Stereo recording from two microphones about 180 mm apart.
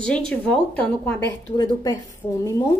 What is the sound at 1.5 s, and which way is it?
A woman's voice, 20° left (ahead or behind).